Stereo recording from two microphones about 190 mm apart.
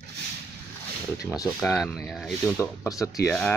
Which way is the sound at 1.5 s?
5° left (ahead or behind).